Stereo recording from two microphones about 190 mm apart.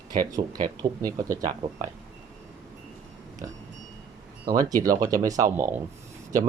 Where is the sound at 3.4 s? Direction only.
15° right (ahead or behind).